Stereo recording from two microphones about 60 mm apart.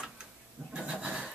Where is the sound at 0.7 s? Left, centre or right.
Centre.